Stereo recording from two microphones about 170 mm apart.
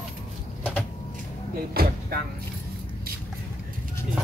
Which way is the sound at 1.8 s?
65° right (ahead or behind).